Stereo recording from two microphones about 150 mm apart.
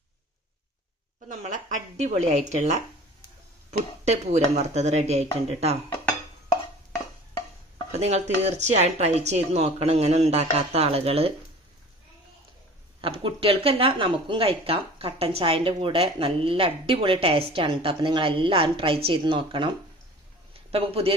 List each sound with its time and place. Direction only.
1.3 s speech: 55° right (ahead or behind)
7.9 s speech: 45° right (ahead or behind)
13.0 s a man's voice: 35° right (ahead or behind)